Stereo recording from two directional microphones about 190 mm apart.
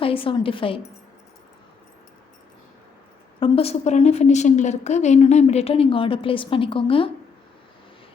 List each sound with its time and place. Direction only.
0.0 s a woman's voice: 30° left (ahead or behind)
3.4 s a woman's voice: 30° left (ahead or behind)